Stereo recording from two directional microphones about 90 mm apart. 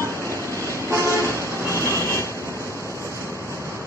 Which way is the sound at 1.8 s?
30° left (ahead or behind).